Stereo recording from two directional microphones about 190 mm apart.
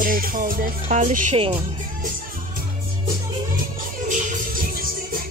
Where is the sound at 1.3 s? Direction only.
30° right (ahead or behind).